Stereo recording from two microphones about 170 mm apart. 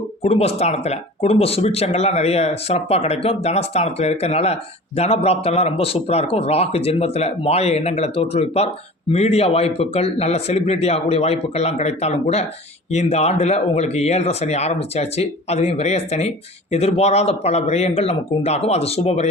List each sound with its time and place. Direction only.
0.2 s speech: 35° left (ahead or behind)